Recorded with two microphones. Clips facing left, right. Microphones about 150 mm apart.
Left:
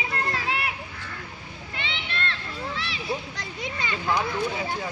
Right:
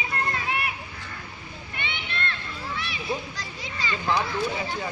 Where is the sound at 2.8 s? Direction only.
75° left (ahead or behind); by 4.0 s 60° left (ahead or behind).